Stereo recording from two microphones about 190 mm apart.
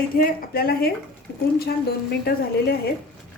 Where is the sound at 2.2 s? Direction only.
55° left (ahead or behind).